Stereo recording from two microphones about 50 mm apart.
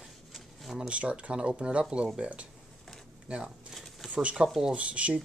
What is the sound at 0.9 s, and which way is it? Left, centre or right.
Speech, right.